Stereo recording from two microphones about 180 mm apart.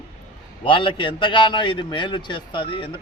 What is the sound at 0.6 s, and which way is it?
A man's voice, 30° left (ahead or behind).